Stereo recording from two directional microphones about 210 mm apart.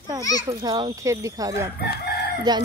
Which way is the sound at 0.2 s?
20° left (ahead or behind).